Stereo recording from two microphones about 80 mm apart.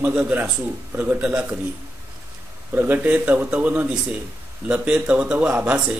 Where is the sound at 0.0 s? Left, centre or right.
Right.